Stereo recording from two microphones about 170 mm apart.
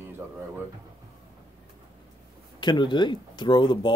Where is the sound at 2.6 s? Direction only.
25° left (ahead or behind).